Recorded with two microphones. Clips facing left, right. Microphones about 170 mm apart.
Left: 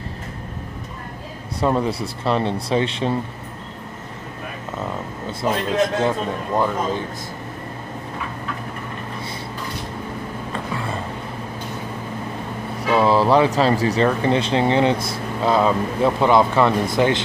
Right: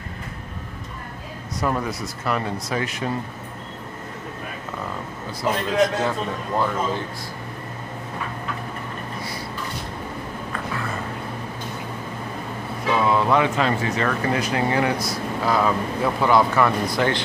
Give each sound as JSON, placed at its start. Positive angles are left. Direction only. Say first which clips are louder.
{"t": 1.6, "sound": "speech", "louder": "left 5 dB", "side_deg": 30}
{"t": 6.0, "sound": "speech", "louder": "left 3 dB", "side_deg": 15}
{"t": 12.9, "sound": "speech", "louder": "left 4 dB", "side_deg": 30}